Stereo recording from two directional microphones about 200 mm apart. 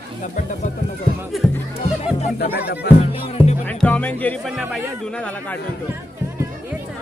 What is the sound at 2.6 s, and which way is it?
Speech, 55° left (ahead or behind).